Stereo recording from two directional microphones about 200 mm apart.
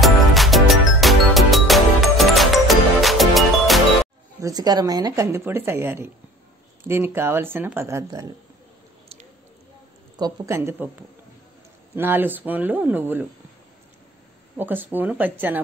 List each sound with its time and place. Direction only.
0.0 s music: centre (ahead or behind)
4.4 s speech: 20° right (ahead or behind)
10.1 s speech: 15° right (ahead or behind)
14.6 s speech: 10° right (ahead or behind)